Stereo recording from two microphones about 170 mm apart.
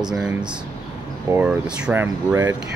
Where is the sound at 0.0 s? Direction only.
5° right (ahead or behind).